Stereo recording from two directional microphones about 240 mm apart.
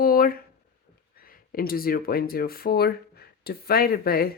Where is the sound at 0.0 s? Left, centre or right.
Left.